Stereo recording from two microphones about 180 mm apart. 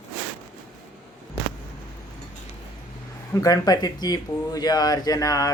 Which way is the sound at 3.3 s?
20° left (ahead or behind).